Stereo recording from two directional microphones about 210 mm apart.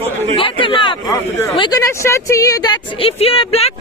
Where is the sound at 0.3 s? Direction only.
25° left (ahead or behind).